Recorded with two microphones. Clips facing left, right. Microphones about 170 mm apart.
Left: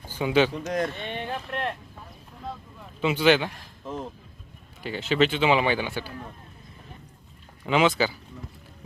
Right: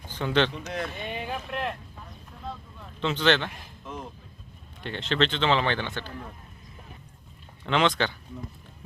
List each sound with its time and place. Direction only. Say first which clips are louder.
0.1 s speech: left 3 dB; 10° left (ahead or behind)
0.6 s speech: left 6 dB; 40° left (ahead or behind)
0.9 s a sound: left 1 dB; 5° right (ahead or behind)
2.5 s vehicle: left 1 dB; 10° left (ahead or behind)
4.8 s speech: left 3 dB; 5° left (ahead or behind)
7.6 s speech: left 2 dB; 5° left (ahead or behind)